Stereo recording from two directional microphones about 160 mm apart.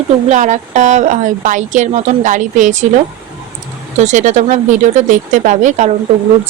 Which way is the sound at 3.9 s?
50° right (ahead or behind).